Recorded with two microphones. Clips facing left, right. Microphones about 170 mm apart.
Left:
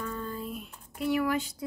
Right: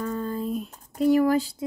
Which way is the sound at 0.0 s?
40° right (ahead or behind).